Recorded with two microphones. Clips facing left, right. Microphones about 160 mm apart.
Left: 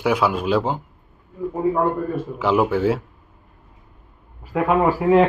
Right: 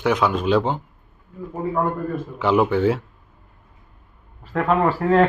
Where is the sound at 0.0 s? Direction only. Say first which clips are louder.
Even; 5° left (ahead or behind).